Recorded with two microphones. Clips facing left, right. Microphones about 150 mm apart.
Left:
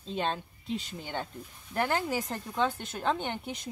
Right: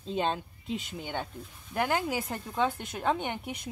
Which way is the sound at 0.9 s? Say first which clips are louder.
Right 1 dB; 10° right (ahead or behind).